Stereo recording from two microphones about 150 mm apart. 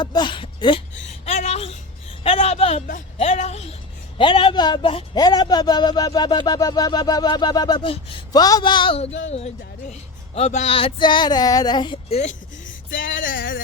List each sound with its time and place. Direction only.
0.0 s speech: 30° left (ahead or behind)
1.0 s a sound: 45° left (ahead or behind)
2.2 s speech: 40° left (ahead or behind)
4.2 s speech: 35° left (ahead or behind)
12.0 s speech: 45° left (ahead or behind)
12.6 s music: 65° left (ahead or behind)